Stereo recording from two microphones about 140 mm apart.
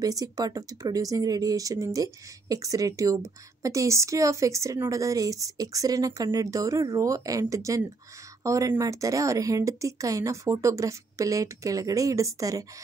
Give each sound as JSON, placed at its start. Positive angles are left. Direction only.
{"t": 0.0, "sound": "speech", "side_deg": -25}